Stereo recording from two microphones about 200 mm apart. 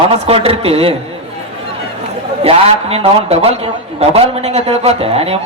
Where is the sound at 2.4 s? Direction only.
30° right (ahead or behind).